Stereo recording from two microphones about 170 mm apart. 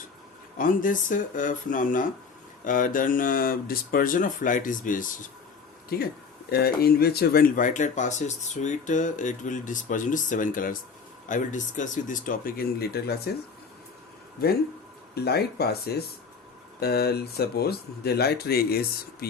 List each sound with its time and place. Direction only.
0.6 s speech: 55° left (ahead or behind)
5.9 s speech: 60° left (ahead or behind)
14.4 s speech: 65° left (ahead or behind)